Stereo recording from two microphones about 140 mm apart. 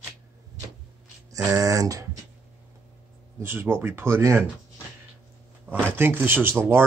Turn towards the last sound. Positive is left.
turn(degrees=-15)  # may be behind; listen again after turning